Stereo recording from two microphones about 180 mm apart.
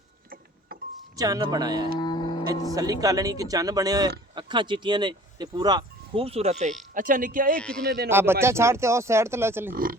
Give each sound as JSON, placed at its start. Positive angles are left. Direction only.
{"t": 1.1, "sound": "speech", "side_deg": -20}
{"t": 2.0, "sound": "music", "side_deg": 25}
{"t": 2.7, "sound": "speech", "side_deg": -20}
{"t": 6.9, "sound": "speech", "side_deg": -50}
{"t": 7.5, "sound": "a man's voice", "side_deg": 5}
{"t": 7.9, "sound": "a man's voice", "side_deg": -55}
{"t": 8.1, "sound": "speech", "side_deg": -15}